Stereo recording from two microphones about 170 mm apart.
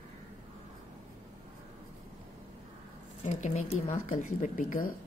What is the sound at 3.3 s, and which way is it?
Speech, 45° left (ahead or behind).